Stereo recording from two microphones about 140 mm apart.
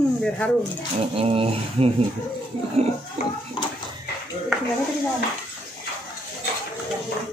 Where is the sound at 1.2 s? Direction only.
45° right (ahead or behind).